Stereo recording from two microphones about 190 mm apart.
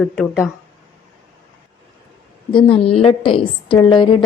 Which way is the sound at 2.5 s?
30° left (ahead or behind).